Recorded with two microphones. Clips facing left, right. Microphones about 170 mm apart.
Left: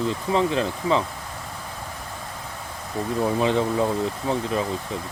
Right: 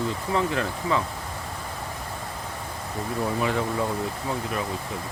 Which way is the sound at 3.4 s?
25° left (ahead or behind).